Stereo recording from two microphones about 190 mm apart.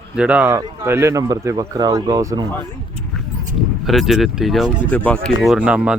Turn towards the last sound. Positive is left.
turn(degrees=-5)  # may be behind; listen again after turning